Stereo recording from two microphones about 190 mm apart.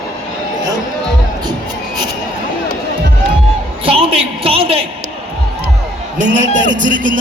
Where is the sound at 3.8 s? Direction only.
30° right (ahead or behind).